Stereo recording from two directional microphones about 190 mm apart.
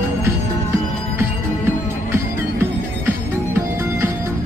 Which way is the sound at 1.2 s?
15° right (ahead or behind).